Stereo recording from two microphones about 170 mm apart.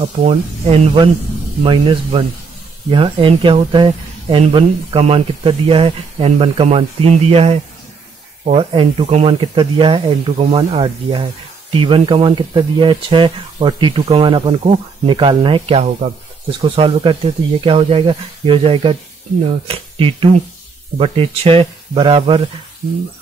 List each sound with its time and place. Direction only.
0.2 s speech: 35° right (ahead or behind)
16.0 s speech: 45° right (ahead or behind)
16.6 s speech: 30° right (ahead or behind)